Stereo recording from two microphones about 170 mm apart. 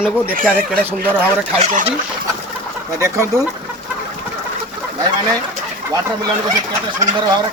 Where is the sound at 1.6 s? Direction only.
50° right (ahead or behind).